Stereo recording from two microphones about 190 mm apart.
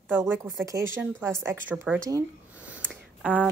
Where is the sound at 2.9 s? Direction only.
10° right (ahead or behind).